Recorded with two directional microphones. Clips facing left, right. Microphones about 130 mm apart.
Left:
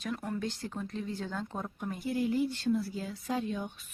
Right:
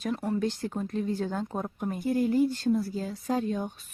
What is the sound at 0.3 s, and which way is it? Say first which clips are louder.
Speech: right 7 dB; 45° right (ahead or behind).